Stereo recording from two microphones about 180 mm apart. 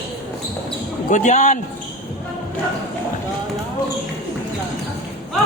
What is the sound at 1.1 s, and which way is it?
Speech, 40° left (ahead or behind).